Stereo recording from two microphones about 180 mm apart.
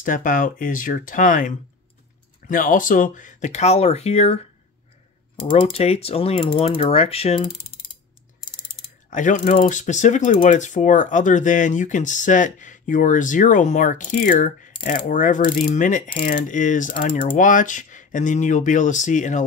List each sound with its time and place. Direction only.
0.0 s speech: 50° left (ahead or behind)
2.4 s typing: 50° left (ahead or behind)
5.5 s typing: 30° left (ahead or behind)
9.1 s speech: 45° left (ahead or behind)